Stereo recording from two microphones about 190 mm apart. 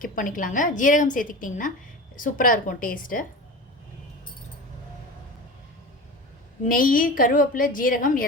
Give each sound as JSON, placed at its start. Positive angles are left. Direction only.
{"t": 0.0, "sound": "a woman's voice", "side_deg": 45}
{"t": 6.7, "sound": "a woman's voice", "side_deg": 45}